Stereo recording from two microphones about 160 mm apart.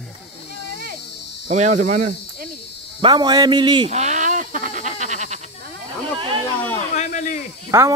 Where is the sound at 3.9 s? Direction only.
45° right (ahead or behind).